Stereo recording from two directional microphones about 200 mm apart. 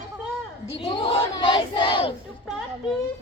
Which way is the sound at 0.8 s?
25° left (ahead or behind).